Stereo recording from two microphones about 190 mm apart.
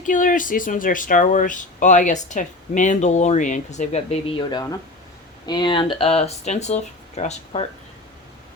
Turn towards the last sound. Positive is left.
turn(degrees=35)  # may be behind; listen again after turning